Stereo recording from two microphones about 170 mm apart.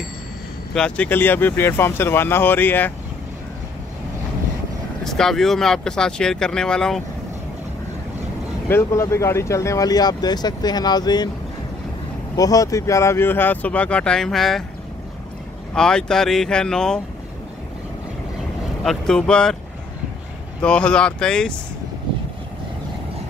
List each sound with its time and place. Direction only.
0.7 s speech: 5° left (ahead or behind)
5.0 s speech: centre (ahead or behind)
8.6 s speech: 15° left (ahead or behind)
12.4 s speech: 20° left (ahead or behind); by 14.6 s centre (ahead or behind)
15.7 s speech: 5° left (ahead or behind)
18.9 s speech: 5° left (ahead or behind)
20.6 s speech: 5° left (ahead or behind)